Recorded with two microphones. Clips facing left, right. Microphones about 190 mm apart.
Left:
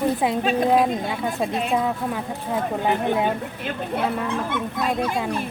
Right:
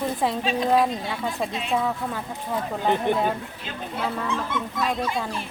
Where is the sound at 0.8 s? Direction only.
15° left (ahead or behind).